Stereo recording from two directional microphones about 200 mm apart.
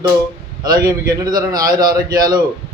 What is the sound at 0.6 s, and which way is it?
A man's voice, 20° right (ahead or behind).